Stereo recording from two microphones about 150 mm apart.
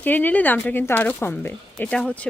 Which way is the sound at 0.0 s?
10° left (ahead or behind).